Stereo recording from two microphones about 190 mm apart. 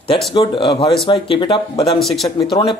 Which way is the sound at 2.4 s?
25° left (ahead or behind).